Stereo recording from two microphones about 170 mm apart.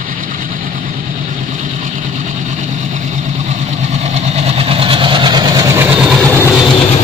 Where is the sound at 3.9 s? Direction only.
40° right (ahead or behind); by 6.3 s centre (ahead or behind).